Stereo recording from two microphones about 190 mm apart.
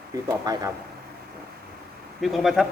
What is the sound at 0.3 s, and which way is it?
Speech, 15° right (ahead or behind).